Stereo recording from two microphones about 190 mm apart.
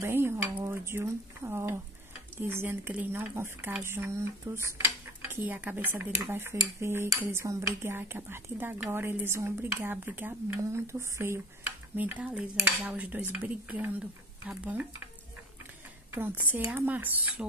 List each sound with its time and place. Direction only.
0.0 s speech: 10° right (ahead or behind)
16.2 s speech: 10° right (ahead or behind)